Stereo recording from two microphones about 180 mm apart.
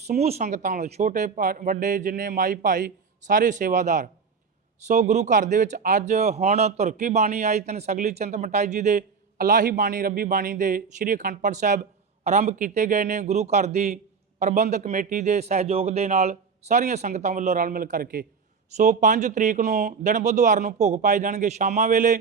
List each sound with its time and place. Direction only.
0.1 s speech: 35° right (ahead or behind); by 18.3 s 55° right (ahead or behind)
18.8 s speech: 45° right (ahead or behind)